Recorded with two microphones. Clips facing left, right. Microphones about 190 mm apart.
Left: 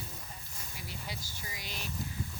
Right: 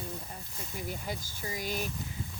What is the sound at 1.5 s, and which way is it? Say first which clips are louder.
Speech: right 11 dB; 45° right (ahead or behind).